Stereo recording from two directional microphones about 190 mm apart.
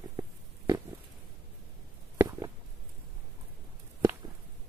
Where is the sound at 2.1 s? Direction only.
20° right (ahead or behind).